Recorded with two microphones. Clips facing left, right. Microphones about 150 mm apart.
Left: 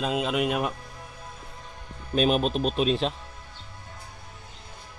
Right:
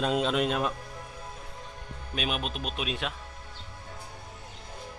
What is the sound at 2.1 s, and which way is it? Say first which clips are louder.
Speech: left 10 dB; 40° left (ahead or behind).